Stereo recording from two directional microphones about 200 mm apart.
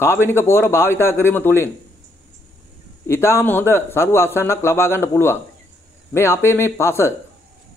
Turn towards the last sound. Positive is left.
turn(degrees=10)  # may be behind; listen again after turning